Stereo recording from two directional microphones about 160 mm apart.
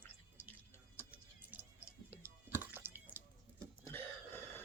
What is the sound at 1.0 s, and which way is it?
Tick-tock, 10° right (ahead or behind).